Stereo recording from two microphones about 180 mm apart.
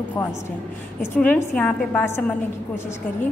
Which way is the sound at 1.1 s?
10° left (ahead or behind).